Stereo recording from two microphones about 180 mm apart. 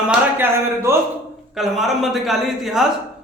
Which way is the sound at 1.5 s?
Centre (ahead or behind).